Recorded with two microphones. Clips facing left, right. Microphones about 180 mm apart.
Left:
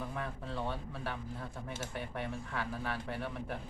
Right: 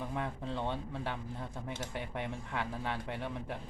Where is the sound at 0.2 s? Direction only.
20° right (ahead or behind).